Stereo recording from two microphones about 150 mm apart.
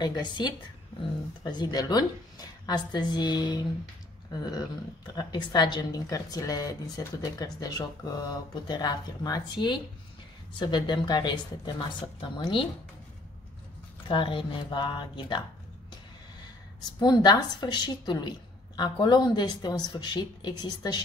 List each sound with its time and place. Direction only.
0.0 s speech: 30° left (ahead or behind)
14.0 s speech: 35° left (ahead or behind)
17.0 s speech: 30° left (ahead or behind)